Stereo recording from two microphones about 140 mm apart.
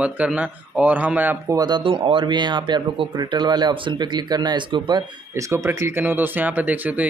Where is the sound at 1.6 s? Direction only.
30° right (ahead or behind).